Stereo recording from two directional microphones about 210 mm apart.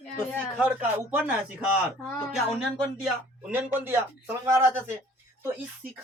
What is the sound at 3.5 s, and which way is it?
Speech, 10° right (ahead or behind).